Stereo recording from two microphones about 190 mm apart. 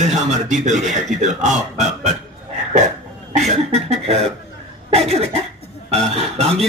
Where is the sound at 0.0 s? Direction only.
35° right (ahead or behind).